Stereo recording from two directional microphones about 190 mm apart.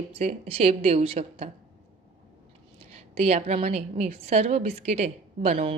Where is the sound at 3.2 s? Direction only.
35° right (ahead or behind).